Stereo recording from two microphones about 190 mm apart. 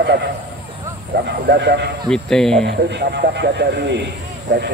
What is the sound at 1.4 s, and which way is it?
Speech, 60° right (ahead or behind).